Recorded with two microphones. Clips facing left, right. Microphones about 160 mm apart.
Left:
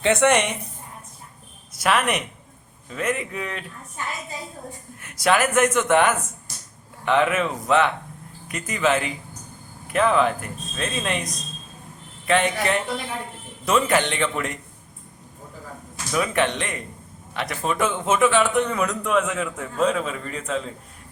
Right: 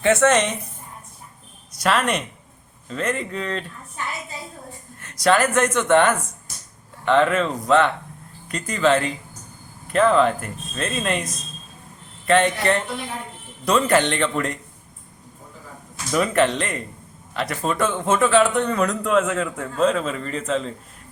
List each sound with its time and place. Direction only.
0.0 s speech: 15° left (ahead or behind)
1.8 s a man's voice: 5° left (ahead or behind)
5.2 s a man's voice: 5° left (ahead or behind)
12.3 s a man's voice: 5° left (ahead or behind)
16.1 s a man's voice: centre (ahead or behind)